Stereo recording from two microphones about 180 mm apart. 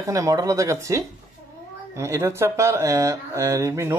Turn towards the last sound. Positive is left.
turn(degrees=-15)  # may be behind; listen again after turning